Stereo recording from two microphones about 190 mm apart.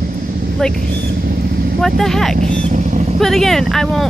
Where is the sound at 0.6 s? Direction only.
5° left (ahead or behind).